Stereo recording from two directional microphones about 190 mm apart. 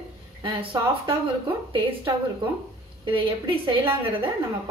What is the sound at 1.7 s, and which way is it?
A woman's voice, 25° right (ahead or behind).